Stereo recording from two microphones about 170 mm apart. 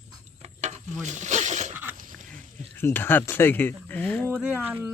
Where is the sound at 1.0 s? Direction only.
45° right (ahead or behind).